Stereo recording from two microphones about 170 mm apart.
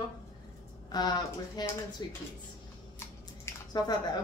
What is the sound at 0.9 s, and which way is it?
A woman's voice, 25° left (ahead or behind).